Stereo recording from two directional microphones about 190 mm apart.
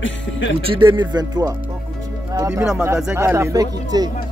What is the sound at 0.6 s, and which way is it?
Speech, 30° right (ahead or behind).